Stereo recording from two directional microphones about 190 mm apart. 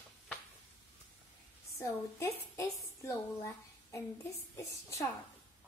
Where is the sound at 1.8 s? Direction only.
15° left (ahead or behind).